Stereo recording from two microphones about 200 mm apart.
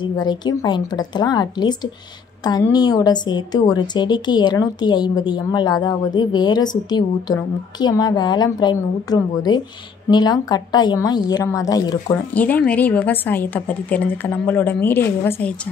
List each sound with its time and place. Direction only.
0.0 s a woman's voice: 20° left (ahead or behind)